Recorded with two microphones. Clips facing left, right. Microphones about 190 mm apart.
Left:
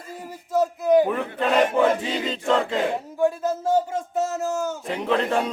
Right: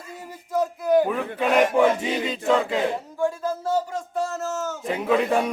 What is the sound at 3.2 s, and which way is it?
Speech, 15° left (ahead or behind).